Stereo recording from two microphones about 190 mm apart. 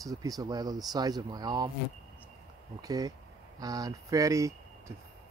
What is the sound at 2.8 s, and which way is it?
Speech, 20° right (ahead or behind).